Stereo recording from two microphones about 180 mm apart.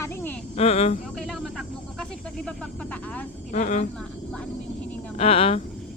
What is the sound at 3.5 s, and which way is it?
Speech, 45° left (ahead or behind).